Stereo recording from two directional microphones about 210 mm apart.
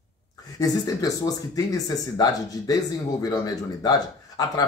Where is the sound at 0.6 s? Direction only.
15° left (ahead or behind).